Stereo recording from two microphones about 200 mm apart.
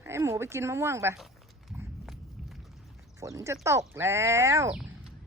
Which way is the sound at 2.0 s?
Centre (ahead or behind).